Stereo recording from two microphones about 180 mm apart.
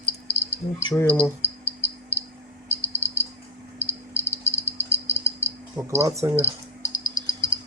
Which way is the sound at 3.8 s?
15° left (ahead or behind).